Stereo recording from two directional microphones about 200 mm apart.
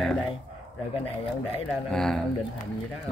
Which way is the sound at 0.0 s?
Centre (ahead or behind).